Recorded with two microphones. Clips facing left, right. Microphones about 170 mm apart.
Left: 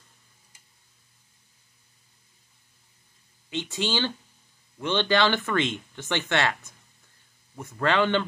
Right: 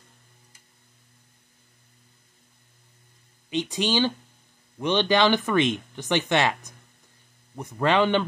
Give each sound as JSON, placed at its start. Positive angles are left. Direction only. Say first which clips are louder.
{"t": 3.4, "sound": "speech", "louder": "right 4 dB", "side_deg": -15}